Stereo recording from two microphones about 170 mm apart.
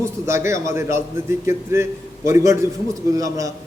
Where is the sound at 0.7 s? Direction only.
15° right (ahead or behind).